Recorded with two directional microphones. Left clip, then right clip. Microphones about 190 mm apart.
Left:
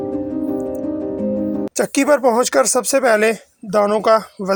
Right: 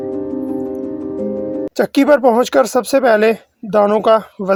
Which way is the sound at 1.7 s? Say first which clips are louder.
Right 3 dB; 30° left (ahead or behind).